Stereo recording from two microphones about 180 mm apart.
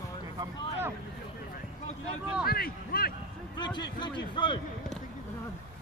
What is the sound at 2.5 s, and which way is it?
Speech, 55° left (ahead or behind).